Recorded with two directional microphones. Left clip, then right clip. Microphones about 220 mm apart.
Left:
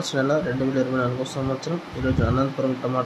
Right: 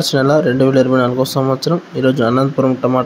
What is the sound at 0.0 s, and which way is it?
Speech, 35° right (ahead or behind).